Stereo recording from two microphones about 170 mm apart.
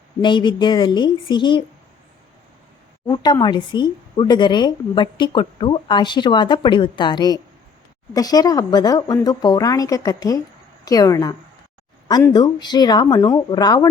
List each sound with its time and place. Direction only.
0.2 s a woman's voice: 25° left (ahead or behind)
3.1 s a woman's voice: 25° left (ahead or behind)